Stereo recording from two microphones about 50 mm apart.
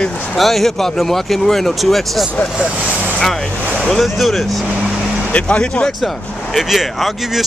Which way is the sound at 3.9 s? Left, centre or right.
Centre.